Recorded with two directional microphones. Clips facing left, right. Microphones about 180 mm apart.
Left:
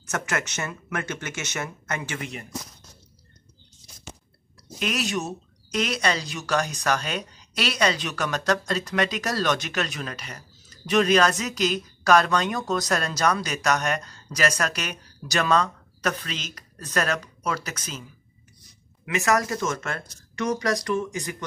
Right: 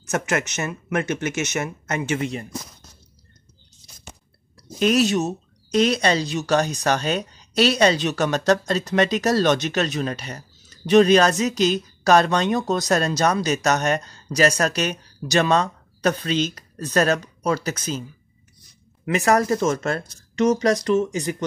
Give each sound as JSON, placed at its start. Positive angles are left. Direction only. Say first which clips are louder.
{"t": 0.1, "sound": "speech", "louder": "right 5 dB", "side_deg": -20}
{"t": 4.7, "sound": "speech", "louder": "right 9 dB", "side_deg": -30}
{"t": 19.0, "sound": "speech", "louder": "right 5 dB", "side_deg": -35}